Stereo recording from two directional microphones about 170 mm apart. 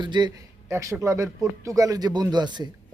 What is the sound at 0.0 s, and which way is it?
Speech, 25° right (ahead or behind).